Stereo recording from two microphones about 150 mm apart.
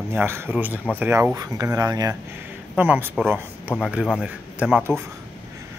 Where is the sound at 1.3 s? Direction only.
25° right (ahead or behind).